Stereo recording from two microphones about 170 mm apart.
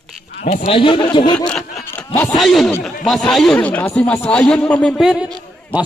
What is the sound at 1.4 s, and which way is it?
Snicker, 5° left (ahead or behind).